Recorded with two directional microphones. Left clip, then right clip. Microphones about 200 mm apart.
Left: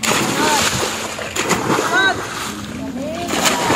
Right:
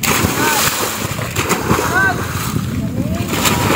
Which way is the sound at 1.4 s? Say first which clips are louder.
Right 1 dB; 15° right (ahead or behind).